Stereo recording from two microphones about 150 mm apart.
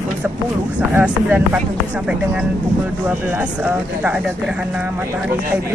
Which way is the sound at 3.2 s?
10° right (ahead or behind).